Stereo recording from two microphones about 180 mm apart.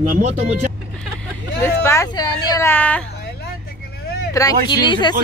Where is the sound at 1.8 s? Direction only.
15° left (ahead or behind).